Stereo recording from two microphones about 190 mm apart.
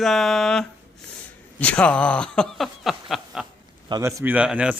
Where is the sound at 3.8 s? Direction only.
20° right (ahead or behind).